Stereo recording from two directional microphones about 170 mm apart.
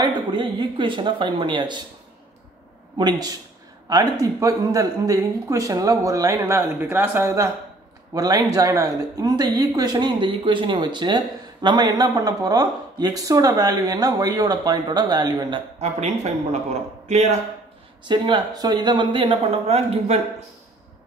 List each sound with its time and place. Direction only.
0.0 s speech: 25° right (ahead or behind)
3.0 s speech: 25° right (ahead or behind)
15.8 s a man's voice: 40° right (ahead or behind)
18.0 s speech: 25° right (ahead or behind)